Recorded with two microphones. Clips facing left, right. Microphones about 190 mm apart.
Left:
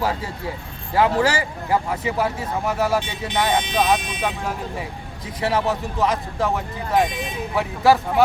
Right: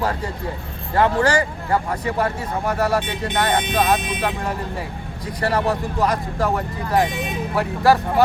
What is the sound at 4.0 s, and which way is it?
Speech, 55° right (ahead or behind).